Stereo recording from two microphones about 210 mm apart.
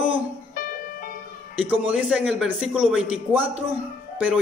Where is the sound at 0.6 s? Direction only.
45° left (ahead or behind).